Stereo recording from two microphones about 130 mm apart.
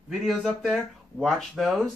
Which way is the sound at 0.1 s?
Centre (ahead or behind).